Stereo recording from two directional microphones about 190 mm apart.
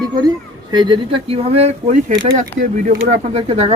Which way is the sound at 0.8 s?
30° right (ahead or behind).